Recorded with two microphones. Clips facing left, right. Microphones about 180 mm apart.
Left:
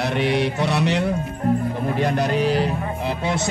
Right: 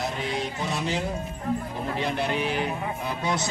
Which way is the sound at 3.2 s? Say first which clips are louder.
Left 2 dB; 25° left (ahead or behind).